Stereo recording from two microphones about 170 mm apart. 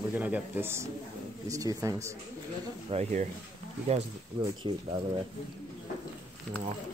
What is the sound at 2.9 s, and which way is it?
Speech, 45° right (ahead or behind).